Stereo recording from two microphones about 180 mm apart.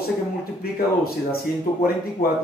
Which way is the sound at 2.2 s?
55° left (ahead or behind).